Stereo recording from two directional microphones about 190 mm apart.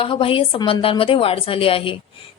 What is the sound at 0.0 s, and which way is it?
A woman's voice, 30° left (ahead or behind).